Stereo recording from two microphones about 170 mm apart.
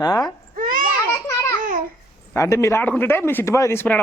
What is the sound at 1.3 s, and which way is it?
Babbling, 15° left (ahead or behind).